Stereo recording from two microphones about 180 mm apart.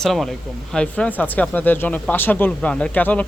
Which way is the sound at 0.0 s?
Centre (ahead or behind).